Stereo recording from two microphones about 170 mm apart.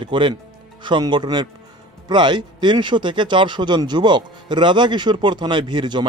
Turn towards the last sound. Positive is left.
turn(degrees=-25)  # may be behind; listen again after turning